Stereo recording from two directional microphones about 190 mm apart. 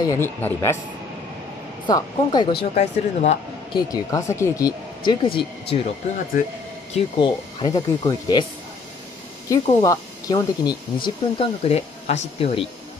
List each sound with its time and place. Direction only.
0.0 s a man's voice: 15° left (ahead or behind)
1.9 s speech: 20° left (ahead or behind)
2.7 s speech: 35° left (ahead or behind)
3.7 s speech: 20° left (ahead or behind)
6.9 s speech: 25° left (ahead or behind)
9.5 s speech: 20° left (ahead or behind)